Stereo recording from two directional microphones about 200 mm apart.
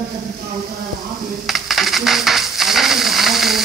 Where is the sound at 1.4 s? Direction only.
Centre (ahead or behind).